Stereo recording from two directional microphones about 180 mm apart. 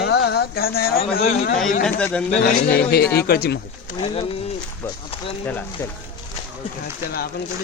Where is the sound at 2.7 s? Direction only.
60° left (ahead or behind).